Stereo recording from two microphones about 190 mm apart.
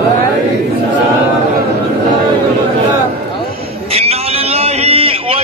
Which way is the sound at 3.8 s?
30° right (ahead or behind).